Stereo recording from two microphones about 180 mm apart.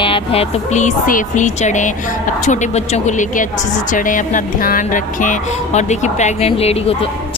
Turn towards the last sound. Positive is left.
turn(degrees=35)  # may be behind; listen again after turning